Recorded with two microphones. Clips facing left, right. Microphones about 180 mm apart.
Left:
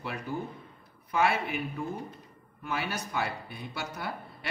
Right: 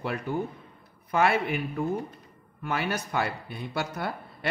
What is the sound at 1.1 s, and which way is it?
Speech, 55° right (ahead or behind).